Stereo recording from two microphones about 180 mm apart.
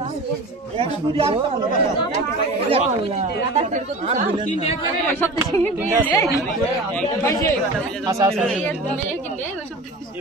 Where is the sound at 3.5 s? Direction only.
40° right (ahead or behind).